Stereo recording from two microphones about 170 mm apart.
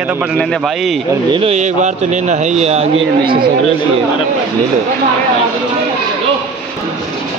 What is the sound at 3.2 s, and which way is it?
Speech, 60° right (ahead or behind).